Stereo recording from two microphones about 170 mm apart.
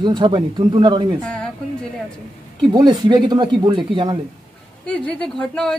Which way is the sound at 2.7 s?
25° right (ahead or behind).